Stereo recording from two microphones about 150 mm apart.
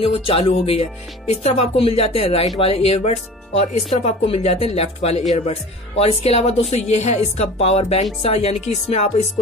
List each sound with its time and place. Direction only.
0.0 s speech: 40° left (ahead or behind)